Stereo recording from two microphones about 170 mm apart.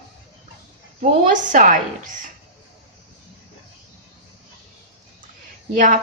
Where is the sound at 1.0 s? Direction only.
50° right (ahead or behind).